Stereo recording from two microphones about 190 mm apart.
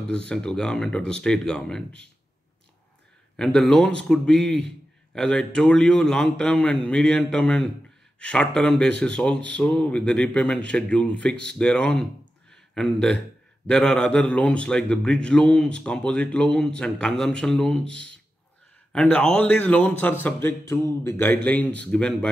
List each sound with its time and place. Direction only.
0.1 s a man's voice: 5° left (ahead or behind)
3.3 s a man's voice: centre (ahead or behind)